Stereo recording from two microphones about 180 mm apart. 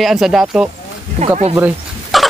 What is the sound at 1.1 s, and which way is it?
Speech, 40° right (ahead or behind).